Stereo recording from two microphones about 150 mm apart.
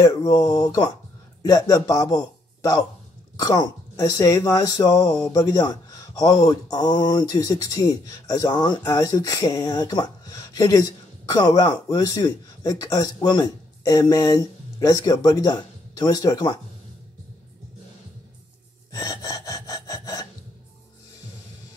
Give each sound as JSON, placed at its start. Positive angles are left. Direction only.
{"t": 0.0, "sound": "a man's voice", "side_deg": 25}
{"t": 18.9, "sound": "gasp", "side_deg": 25}